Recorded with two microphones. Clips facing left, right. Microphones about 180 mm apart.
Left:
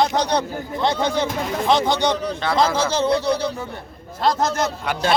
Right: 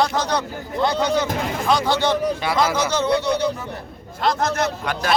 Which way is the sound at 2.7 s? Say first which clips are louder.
Left 1 dB; 30° left (ahead or behind).